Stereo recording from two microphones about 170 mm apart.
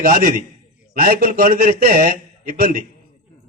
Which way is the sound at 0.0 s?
50° right (ahead or behind).